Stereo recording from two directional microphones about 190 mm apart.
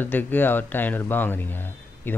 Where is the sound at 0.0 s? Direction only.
10° left (ahead or behind).